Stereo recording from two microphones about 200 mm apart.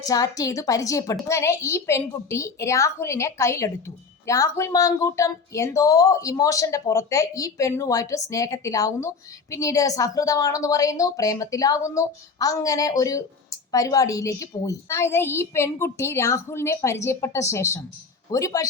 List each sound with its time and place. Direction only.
0.1 s a woman's voice: 15° left (ahead or behind)